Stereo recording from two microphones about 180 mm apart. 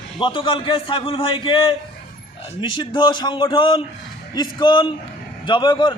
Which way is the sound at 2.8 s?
25° left (ahead or behind).